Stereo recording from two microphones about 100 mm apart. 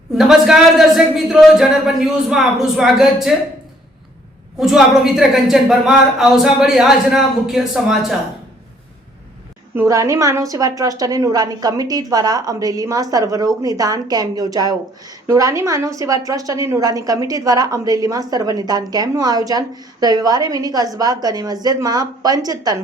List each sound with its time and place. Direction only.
0.2 s a woman's voice: 5° right (ahead or behind)
4.6 s a woman's voice: 5° right (ahead or behind)
9.7 s a woman's voice: 30° right (ahead or behind)